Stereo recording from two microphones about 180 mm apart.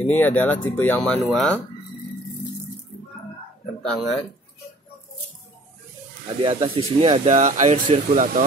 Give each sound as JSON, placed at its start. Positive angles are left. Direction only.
{"t": 0.0, "sound": "speech", "side_deg": 10}
{"t": 3.8, "sound": "speech", "side_deg": 5}
{"t": 6.4, "sound": "speech", "side_deg": -30}